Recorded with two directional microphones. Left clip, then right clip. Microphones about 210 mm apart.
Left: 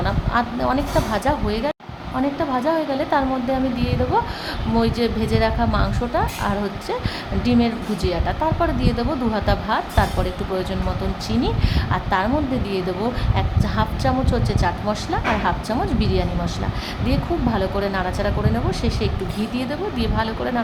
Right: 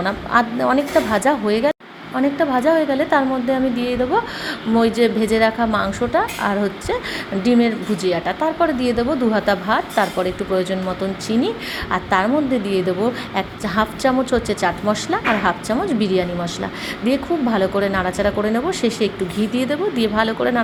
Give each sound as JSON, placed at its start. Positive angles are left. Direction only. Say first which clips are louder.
{"t": 0.0, "sound": "speech", "louder": "right 4 dB", "side_deg": -20}